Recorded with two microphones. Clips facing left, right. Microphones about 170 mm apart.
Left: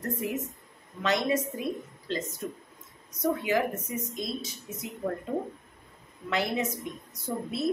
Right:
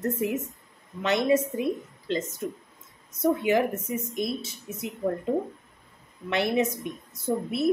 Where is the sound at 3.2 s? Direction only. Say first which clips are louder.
Right 4 dB; 25° right (ahead or behind).